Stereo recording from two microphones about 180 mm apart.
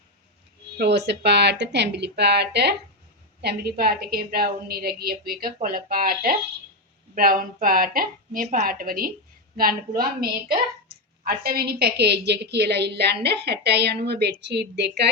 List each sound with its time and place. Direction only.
0.8 s a woman's voice: 70° right (ahead or behind); by 10.2 s 55° right (ahead or behind)
11.3 s a woman's voice: 55° right (ahead or behind)